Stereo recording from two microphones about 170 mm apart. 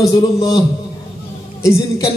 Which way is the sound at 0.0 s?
5° right (ahead or behind).